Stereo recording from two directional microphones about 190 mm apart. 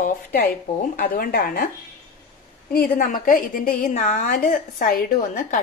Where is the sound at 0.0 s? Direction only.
55° left (ahead or behind).